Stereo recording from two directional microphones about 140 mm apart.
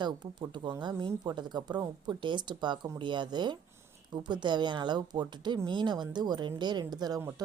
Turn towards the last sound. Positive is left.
turn(degrees=-30)  # may be behind; listen again after turning